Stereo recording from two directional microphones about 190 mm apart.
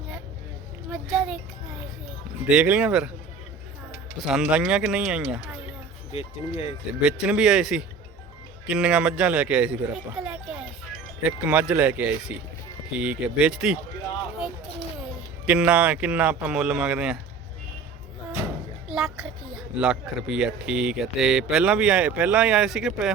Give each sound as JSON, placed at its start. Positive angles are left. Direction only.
{"t": 1.1, "sound": "a child's voice", "side_deg": -5}
{"t": 2.5, "sound": "speech", "side_deg": -5}
{"t": 4.2, "sound": "speech", "side_deg": -5}
{"t": 6.1, "sound": "speech", "side_deg": 30}
{"t": 7.0, "sound": "speech", "side_deg": -5}
{"t": 15.4, "sound": "speech", "side_deg": -5}
{"t": 18.9, "sound": "speech", "side_deg": 0}